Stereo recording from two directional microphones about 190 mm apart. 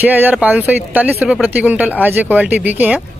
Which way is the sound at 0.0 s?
10° right (ahead or behind).